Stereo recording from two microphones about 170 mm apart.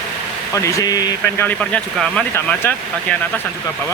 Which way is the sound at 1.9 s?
5° left (ahead or behind).